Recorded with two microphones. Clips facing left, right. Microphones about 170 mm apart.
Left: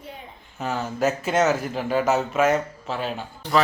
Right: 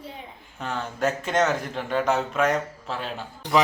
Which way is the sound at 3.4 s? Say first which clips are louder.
Even; 15° right (ahead or behind).